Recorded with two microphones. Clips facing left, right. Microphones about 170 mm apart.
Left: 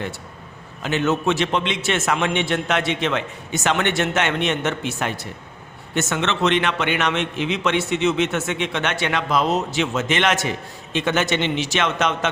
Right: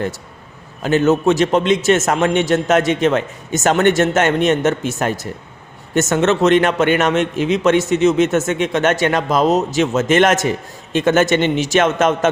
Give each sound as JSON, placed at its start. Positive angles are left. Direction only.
{"t": 0.8, "sound": "a man's voice", "side_deg": -40}